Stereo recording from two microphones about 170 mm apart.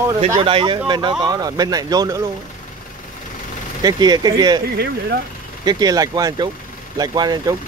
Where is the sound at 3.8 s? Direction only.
25° right (ahead or behind).